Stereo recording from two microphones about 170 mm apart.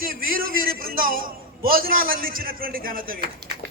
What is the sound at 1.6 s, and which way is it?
A man's voice, 60° right (ahead or behind).